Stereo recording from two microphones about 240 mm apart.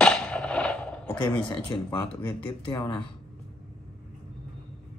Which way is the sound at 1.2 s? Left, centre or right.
Centre.